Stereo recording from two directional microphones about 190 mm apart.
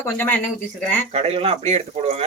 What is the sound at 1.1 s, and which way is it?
Speech, 35° right (ahead or behind).